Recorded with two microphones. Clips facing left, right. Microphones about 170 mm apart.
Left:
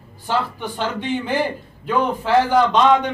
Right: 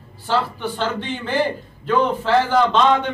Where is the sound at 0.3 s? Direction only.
10° left (ahead or behind).